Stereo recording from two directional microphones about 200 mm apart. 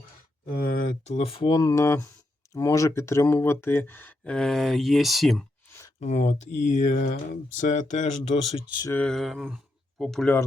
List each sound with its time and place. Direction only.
0.4 s speech: 50° left (ahead or behind); by 5.5 s centre (ahead or behind)
6.0 s speech: 35° left (ahead or behind)
8.8 s speech: 10° left (ahead or behind)